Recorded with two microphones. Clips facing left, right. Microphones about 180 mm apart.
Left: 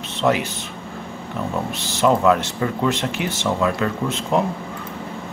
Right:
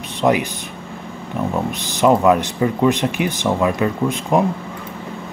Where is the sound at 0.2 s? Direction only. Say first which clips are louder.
Right 3 dB; 15° right (ahead or behind).